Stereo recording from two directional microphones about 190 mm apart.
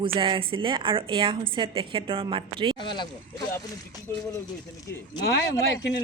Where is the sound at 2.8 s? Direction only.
25° left (ahead or behind).